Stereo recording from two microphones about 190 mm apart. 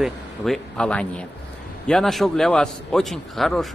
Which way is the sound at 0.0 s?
5° left (ahead or behind).